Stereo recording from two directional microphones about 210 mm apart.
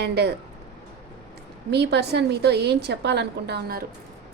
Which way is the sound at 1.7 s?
55° right (ahead or behind).